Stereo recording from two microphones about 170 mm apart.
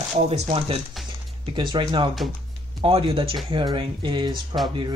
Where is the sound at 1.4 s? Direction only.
25° right (ahead or behind).